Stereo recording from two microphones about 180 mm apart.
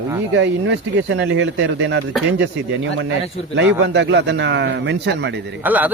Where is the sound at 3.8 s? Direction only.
85° right.